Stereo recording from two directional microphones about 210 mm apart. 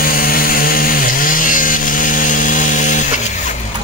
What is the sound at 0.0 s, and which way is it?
Chainsaw, 45° left (ahead or behind).